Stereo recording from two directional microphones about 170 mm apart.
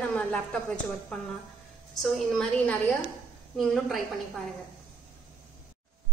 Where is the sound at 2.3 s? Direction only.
5° left (ahead or behind).